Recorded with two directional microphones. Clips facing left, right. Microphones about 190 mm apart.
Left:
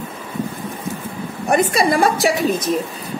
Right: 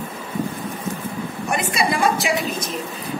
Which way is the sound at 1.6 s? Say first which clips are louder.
Left 4 dB; 45° left (ahead or behind).